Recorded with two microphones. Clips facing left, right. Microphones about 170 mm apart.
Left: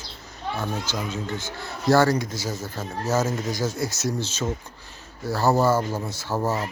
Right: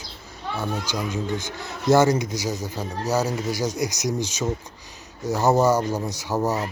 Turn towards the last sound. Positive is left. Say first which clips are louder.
# right 2 dB
turn(degrees=-15)  # may be behind; listen again after turning